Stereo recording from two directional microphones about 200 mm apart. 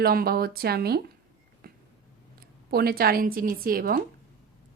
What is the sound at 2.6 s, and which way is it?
A woman's voice, 50° right (ahead or behind).